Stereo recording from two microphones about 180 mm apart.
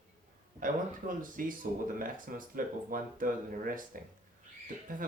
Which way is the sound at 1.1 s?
50° right (ahead or behind).